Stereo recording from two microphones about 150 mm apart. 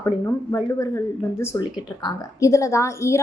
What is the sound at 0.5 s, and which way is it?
A woman's voice, 20° left (ahead or behind).